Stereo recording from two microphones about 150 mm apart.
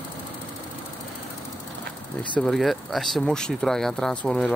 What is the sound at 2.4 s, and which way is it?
Speech, centre (ahead or behind).